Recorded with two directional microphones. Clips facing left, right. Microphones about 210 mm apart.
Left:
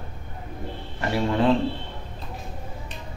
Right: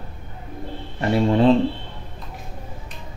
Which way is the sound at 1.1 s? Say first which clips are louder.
Right 5 dB; 25° right (ahead or behind).